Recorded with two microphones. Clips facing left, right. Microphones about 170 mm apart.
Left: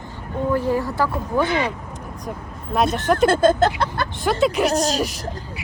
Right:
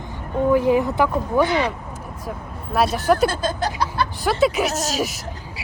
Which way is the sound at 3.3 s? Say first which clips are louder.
Left 8 dB; 55° left (ahead or behind).